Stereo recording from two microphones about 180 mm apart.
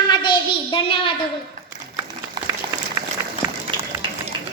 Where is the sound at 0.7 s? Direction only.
30° left (ahead or behind).